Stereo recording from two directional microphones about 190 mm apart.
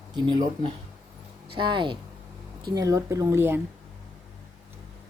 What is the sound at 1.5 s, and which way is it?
A woman's voice, 25° right (ahead or behind).